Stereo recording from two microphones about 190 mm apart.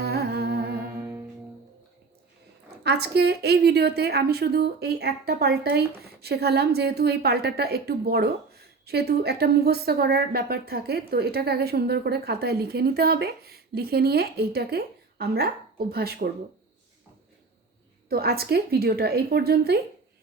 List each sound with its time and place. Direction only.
0.0 s music: 55° right (ahead or behind)
0.9 s music: 10° right (ahead or behind)
2.8 s a woman's voice: 60° right (ahead or behind)
18.1 s a woman's voice: 55° right (ahead or behind)